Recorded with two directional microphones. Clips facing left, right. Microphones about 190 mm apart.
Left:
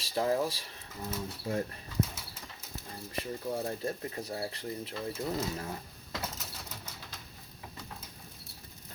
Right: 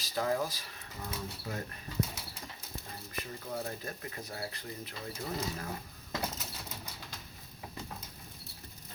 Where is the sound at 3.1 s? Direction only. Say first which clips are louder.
Left 6 dB; 30° left (ahead or behind).